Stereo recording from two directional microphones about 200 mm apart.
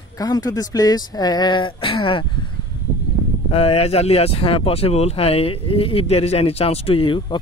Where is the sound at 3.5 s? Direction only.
30° left (ahead or behind).